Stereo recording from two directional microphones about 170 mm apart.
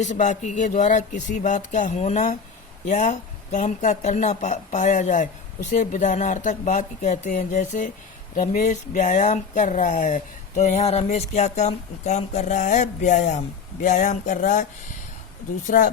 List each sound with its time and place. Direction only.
0.0 s speech: 45° left (ahead or behind)